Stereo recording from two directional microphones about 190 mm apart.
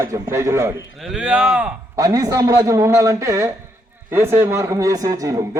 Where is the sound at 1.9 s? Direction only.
20° right (ahead or behind).